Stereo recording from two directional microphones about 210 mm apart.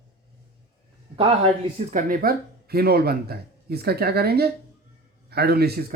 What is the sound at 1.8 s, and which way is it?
Speech, 40° right (ahead or behind).